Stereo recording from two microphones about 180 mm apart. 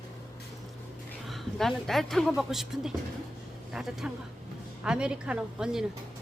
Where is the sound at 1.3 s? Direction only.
Centre (ahead or behind).